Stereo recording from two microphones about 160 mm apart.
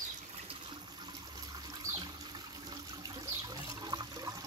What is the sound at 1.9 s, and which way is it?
Water, 20° right (ahead or behind).